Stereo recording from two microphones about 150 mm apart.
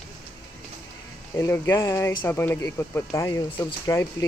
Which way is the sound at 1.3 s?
15° left (ahead or behind).